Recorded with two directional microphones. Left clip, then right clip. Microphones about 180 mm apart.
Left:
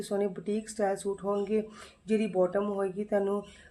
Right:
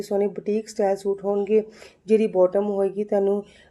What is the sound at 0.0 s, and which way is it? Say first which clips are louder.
Speech: right 8 dB; 15° right (ahead or behind).